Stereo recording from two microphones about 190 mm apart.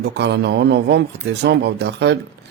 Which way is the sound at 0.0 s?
60° right (ahead or behind).